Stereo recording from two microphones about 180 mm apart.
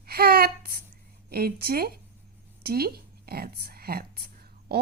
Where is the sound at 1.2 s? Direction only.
60° right (ahead or behind).